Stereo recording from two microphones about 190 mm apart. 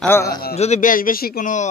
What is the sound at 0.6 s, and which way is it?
Speech, 40° left (ahead or behind).